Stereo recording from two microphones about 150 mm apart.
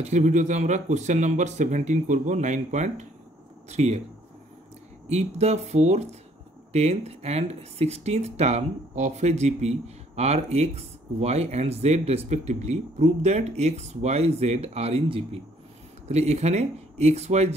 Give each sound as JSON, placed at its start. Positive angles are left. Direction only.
{"t": 0.0, "sound": "speech", "side_deg": -50}
{"t": 5.1, "sound": "speech", "side_deg": -45}